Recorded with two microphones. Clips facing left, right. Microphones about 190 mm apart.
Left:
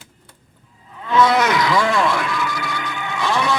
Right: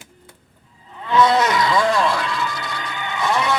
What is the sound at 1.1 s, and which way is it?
Speech, 25° right (ahead or behind).